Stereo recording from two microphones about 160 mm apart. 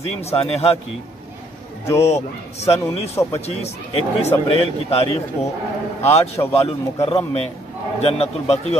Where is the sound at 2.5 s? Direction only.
40° left (ahead or behind).